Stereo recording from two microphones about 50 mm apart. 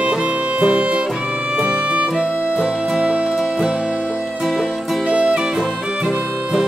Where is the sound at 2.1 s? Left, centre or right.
Centre.